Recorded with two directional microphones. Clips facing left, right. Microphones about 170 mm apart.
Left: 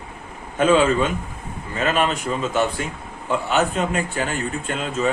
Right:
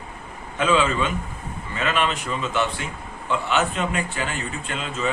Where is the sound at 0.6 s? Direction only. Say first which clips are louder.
Left 4 dB; 45° left (ahead or behind).